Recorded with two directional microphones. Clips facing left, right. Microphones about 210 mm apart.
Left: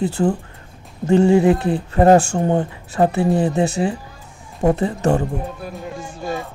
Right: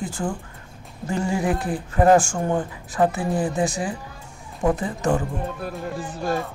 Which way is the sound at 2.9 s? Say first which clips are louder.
Left 5 dB; 25° left (ahead or behind).